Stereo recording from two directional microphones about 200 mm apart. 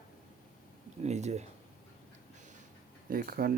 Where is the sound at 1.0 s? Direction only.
35° right (ahead or behind).